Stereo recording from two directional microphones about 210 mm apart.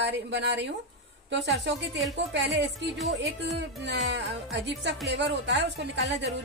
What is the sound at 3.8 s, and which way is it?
A woman's voice, 55° right (ahead or behind).